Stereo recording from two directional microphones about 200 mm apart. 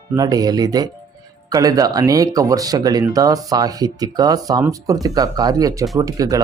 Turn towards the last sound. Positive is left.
turn(degrees=-15)  # may be behind; listen again after turning